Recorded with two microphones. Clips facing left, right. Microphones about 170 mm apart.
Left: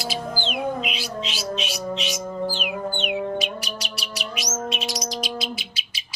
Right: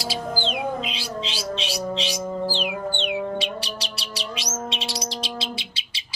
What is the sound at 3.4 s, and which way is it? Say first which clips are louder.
Bird: even; 30° right (ahead or behind).